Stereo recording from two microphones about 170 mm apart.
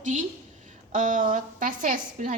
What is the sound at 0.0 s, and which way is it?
A woman's voice, 45° right (ahead or behind).